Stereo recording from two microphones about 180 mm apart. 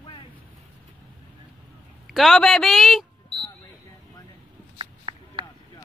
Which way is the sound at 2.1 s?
Centre (ahead or behind).